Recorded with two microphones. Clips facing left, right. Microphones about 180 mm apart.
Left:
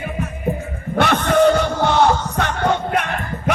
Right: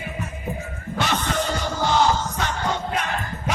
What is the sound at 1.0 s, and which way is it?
Music, 60° left (ahead or behind).